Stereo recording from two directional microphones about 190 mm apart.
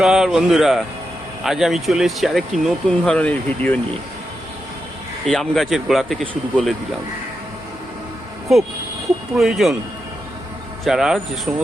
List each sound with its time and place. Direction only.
0.0 s speech: centre (ahead or behind)
5.2 s speech: centre (ahead or behind)
9.3 s speech: centre (ahead or behind)
10.8 s speech: centre (ahead or behind)